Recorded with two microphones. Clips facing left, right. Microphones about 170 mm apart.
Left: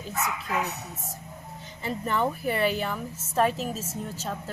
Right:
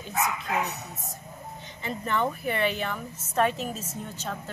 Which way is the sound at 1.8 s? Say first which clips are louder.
Left 2 dB; 35° left (ahead or behind).